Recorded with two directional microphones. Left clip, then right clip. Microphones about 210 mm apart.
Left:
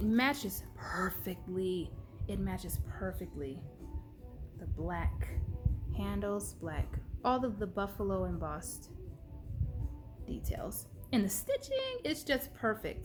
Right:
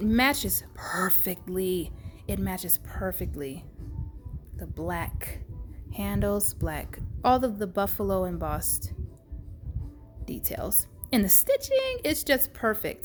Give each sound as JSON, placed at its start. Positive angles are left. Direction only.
{"t": 0.0, "sound": "a woman's voice", "side_deg": -35}
{"t": 4.6, "sound": "a woman's voice", "side_deg": -40}
{"t": 10.2, "sound": "a woman's voice", "side_deg": -40}